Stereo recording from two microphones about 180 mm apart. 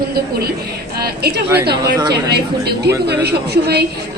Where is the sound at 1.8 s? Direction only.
20° right (ahead or behind).